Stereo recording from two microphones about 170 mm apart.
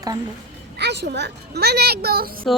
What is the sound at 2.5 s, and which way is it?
Music, centre (ahead or behind).